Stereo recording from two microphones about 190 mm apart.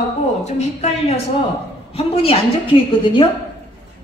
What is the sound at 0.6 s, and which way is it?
A woman's voice, 35° left (ahead or behind).